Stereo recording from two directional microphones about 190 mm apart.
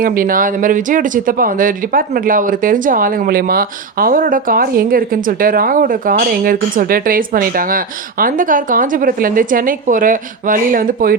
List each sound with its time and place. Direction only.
0.0 s speech: 50° right (ahead or behind)